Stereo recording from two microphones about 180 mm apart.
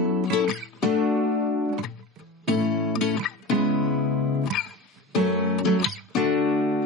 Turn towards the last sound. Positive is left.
turn(degrees=0)  # may be behind; listen again after turning